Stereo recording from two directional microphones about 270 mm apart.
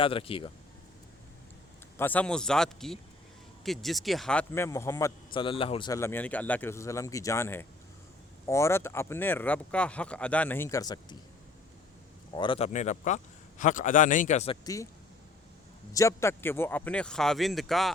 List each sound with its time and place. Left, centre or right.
0.0 s a man's voice: centre
2.0 s a man's voice: centre
12.3 s a man's voice: centre
15.9 s speech: centre